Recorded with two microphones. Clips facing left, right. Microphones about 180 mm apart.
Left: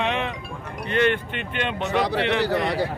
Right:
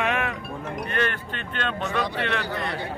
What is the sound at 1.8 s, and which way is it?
A man's voice, 75° left (ahead or behind).